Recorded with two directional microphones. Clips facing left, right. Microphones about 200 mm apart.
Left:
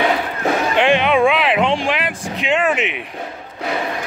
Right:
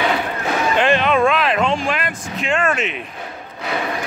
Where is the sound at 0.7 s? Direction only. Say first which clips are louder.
Left 1 dB; 15° left (ahead or behind).